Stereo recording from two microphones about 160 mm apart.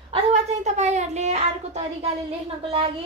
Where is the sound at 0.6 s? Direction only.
45° right (ahead or behind).